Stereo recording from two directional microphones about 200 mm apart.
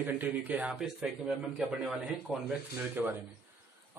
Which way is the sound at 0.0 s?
10° right (ahead or behind).